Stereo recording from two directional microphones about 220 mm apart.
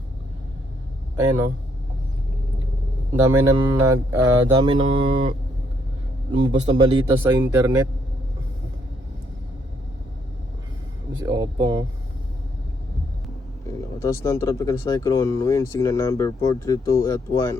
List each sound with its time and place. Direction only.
3.2 s mantra: 15° right (ahead or behind)
6.3 s speech: 20° right (ahead or behind)
7.2 s mantra: 10° right (ahead or behind)
11.3 s mantra: 15° right (ahead or behind)
14.0 s speech: 15° left (ahead or behind)